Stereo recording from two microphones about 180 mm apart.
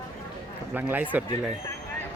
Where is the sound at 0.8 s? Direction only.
10° right (ahead or behind).